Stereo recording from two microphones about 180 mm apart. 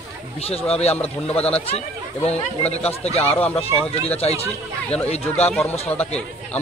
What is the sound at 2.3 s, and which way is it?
Speech, 35° left (ahead or behind).